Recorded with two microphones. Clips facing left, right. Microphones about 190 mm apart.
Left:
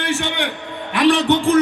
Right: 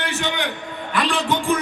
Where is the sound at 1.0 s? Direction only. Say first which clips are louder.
Left 13 dB; 65° left (ahead or behind).